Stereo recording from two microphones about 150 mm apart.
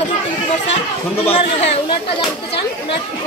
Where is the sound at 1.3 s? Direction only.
40° left (ahead or behind).